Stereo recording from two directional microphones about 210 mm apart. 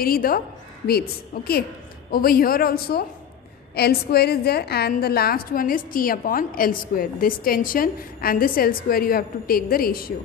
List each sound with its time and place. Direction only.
0.0 s a woman's voice: 45° left (ahead or behind)